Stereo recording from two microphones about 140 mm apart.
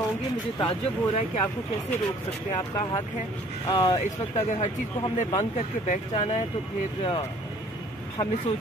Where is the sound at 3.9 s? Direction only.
55° left (ahead or behind).